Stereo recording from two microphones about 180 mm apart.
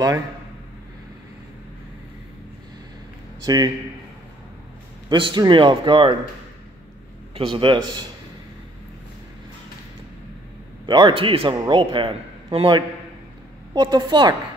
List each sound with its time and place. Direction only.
3.4 s a man's voice: 20° right (ahead or behind)
5.1 s a man's voice: 25° right (ahead or behind)
7.3 s a man's voice: 30° right (ahead or behind)
10.9 s a man's voice: 25° right (ahead or behind)